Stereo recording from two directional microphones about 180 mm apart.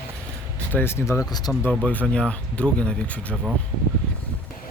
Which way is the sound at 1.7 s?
5° left (ahead or behind).